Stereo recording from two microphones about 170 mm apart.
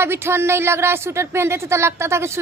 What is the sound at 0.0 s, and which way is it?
Speech, 15° right (ahead or behind).